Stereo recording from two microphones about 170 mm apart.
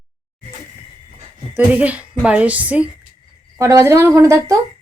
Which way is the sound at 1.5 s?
10° right (ahead or behind).